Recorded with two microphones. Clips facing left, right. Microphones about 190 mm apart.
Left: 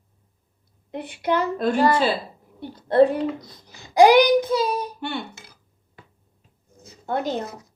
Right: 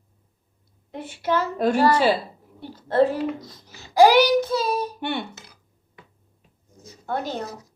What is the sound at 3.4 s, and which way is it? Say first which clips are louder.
A child's voice: right 2 dB; 15° left (ahead or behind).